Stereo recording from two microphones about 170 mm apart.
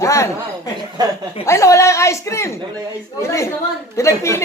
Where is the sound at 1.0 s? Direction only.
25° right (ahead or behind).